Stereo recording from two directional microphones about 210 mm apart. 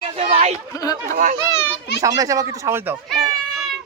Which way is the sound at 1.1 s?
40° right (ahead or behind).